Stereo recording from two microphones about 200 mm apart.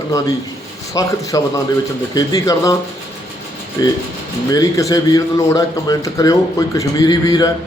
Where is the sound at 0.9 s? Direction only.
15° left (ahead or behind).